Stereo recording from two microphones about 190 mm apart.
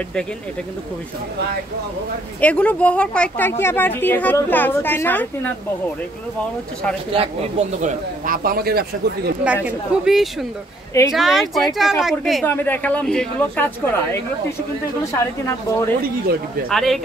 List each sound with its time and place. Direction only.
2.4 s speech: 5° left (ahead or behind)
7.1 s speech: 35° right (ahead or behind); by 9.3 s 55° right (ahead or behind)
9.4 s a woman's voice: 5° right (ahead or behind)
12.4 s speech: 10° left (ahead or behind)
16.6 s a woman's voice: centre (ahead or behind)